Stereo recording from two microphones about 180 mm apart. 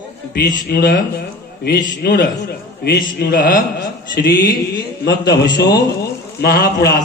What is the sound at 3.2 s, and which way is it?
Mantra, 55° left (ahead or behind).